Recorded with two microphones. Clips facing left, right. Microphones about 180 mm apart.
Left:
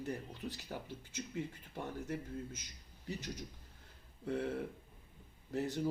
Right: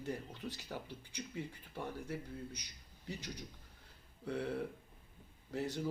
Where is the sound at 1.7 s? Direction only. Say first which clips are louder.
Left 1 dB; 20° left (ahead or behind).